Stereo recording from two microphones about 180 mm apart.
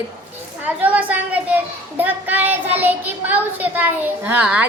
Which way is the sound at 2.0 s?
10° right (ahead or behind).